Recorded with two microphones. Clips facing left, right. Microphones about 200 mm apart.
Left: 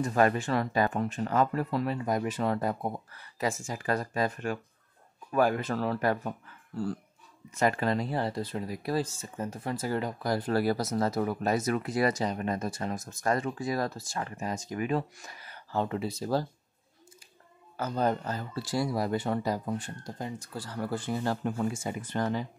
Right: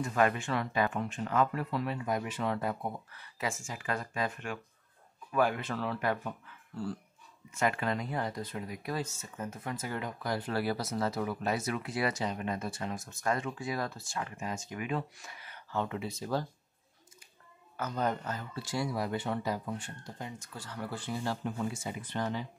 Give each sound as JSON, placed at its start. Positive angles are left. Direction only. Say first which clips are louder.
{"t": 0.0, "sound": "speech", "louder": "left 4 dB", "side_deg": 40}
{"t": 17.7, "sound": "speech", "louder": "left 4 dB", "side_deg": 30}